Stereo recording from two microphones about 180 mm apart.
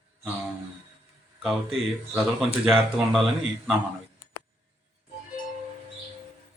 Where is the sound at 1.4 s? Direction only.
Centre (ahead or behind).